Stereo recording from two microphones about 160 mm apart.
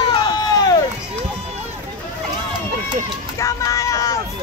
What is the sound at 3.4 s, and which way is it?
Vehicle, 20° left (ahead or behind).